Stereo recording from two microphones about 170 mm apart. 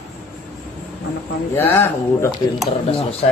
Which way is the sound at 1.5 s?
15° left (ahead or behind).